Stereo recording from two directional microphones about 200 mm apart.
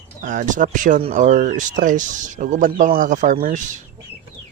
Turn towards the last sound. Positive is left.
turn(degrees=-40)  # may be behind; listen again after turning